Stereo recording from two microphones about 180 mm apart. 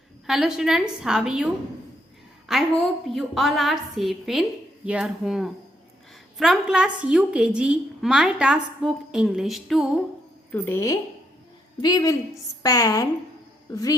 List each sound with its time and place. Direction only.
0.3 s a woman's voice: centre (ahead or behind)
2.5 s a woman's voice: centre (ahead or behind)
10.5 s a woman's voice: 15° left (ahead or behind)